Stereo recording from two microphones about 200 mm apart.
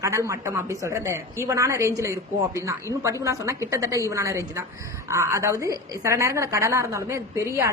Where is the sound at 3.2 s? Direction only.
15° right (ahead or behind).